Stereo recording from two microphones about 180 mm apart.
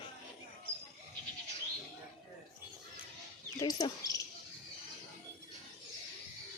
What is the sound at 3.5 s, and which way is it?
Speech, 20° left (ahead or behind).